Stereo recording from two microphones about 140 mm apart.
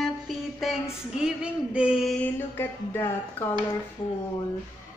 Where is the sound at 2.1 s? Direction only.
15° left (ahead or behind).